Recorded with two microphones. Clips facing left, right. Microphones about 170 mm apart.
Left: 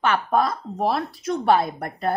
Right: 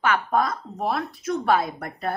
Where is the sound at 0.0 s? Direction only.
30° left (ahead or behind).